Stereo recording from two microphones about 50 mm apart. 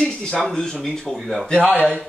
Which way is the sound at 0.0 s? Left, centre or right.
Centre.